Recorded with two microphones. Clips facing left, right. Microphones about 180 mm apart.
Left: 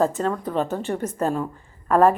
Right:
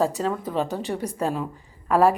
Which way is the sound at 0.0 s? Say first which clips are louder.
Left 2 dB; 5° right (ahead or behind).